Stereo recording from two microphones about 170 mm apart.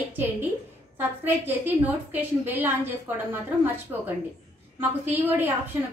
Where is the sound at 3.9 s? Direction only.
10° right (ahead or behind).